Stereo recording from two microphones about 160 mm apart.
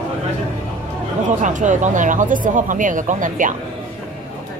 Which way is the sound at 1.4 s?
50° right (ahead or behind).